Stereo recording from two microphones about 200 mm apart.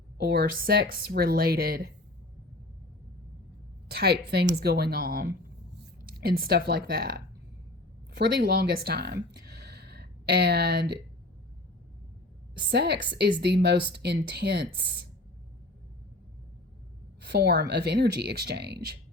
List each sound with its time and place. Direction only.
0.2 s a woman's voice: 50° right (ahead or behind)
3.8 s a woman's voice: 50° right (ahead or behind)
12.6 s a woman's voice: 55° right (ahead or behind)
17.2 s speech: 55° right (ahead or behind)